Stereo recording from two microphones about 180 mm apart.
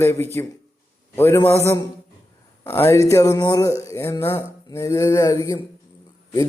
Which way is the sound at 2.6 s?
15° left (ahead or behind).